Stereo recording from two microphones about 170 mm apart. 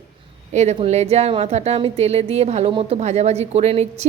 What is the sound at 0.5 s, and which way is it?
A woman's voice, 40° right (ahead or behind).